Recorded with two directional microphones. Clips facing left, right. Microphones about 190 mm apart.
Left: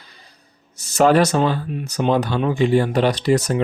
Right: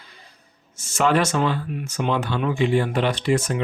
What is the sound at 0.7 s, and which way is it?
Speech, 40° left (ahead or behind).